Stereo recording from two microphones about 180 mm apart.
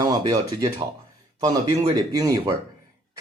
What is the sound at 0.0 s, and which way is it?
Speech, 20° right (ahead or behind).